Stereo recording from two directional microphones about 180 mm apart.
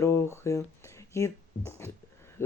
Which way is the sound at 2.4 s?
15° left (ahead or behind).